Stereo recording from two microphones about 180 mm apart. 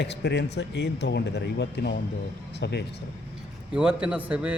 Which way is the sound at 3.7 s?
5° right (ahead or behind).